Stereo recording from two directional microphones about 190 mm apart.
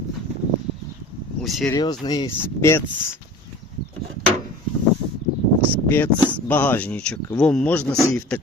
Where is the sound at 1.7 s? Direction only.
20° left (ahead or behind).